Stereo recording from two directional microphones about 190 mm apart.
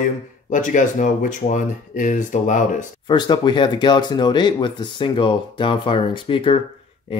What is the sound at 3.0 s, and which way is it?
Speech, 20° left (ahead or behind).